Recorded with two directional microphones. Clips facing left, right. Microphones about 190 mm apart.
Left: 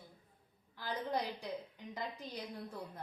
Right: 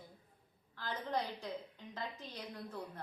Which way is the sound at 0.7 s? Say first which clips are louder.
Left 1 dB; 15° left (ahead or behind).